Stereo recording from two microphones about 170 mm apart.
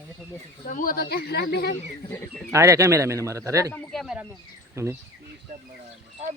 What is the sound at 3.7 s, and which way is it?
Speech, centre (ahead or behind).